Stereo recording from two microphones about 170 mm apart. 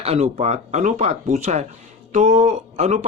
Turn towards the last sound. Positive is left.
turn(degrees=-40)  # may be behind; listen again after turning